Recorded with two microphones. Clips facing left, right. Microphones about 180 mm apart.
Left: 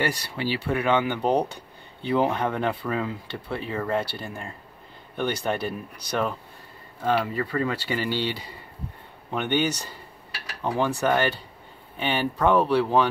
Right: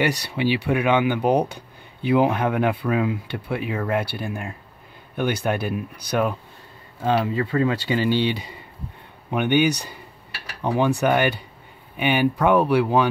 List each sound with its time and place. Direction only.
0.0 s speech: 15° right (ahead or behind)